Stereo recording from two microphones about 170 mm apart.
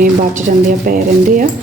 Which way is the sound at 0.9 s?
55° right (ahead or behind).